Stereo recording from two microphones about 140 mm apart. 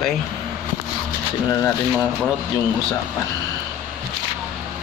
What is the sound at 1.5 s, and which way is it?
Speech, 15° left (ahead or behind).